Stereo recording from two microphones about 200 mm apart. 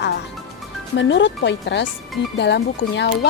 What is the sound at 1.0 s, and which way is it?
Speech, 65° left (ahead or behind).